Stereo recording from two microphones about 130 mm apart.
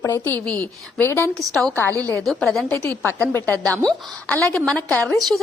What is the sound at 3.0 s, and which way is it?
A woman's voice, 15° left (ahead or behind).